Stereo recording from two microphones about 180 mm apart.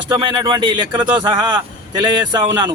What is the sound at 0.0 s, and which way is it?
Speech, 25° right (ahead or behind).